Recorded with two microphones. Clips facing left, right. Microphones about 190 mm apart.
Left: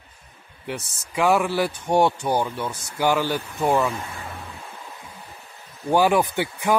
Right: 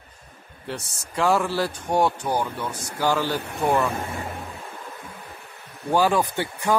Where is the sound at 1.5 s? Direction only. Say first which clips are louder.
Left 2 dB; 20° left (ahead or behind).